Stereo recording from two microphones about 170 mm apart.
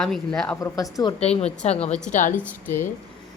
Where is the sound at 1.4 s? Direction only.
40° left (ahead or behind).